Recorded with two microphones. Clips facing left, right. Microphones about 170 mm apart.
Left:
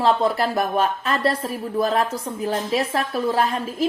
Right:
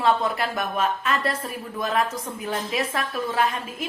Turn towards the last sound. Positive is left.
turn(degrees=35)  # may be behind; listen again after turning